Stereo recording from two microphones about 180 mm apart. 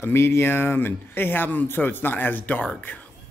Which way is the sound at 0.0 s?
15° left (ahead or behind).